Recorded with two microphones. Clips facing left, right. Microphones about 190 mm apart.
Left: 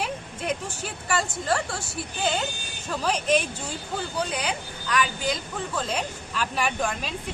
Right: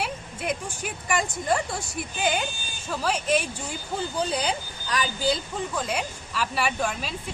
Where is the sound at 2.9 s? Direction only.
10° right (ahead or behind).